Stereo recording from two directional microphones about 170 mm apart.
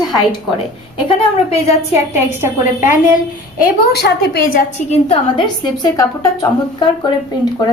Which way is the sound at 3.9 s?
70° left (ahead or behind).